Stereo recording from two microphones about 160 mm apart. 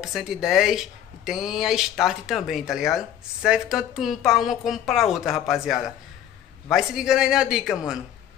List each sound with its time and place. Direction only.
0.0 s speech: 5° right (ahead or behind)